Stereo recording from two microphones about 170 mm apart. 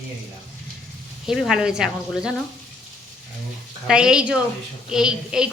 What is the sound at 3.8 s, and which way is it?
Speech, 5° right (ahead or behind).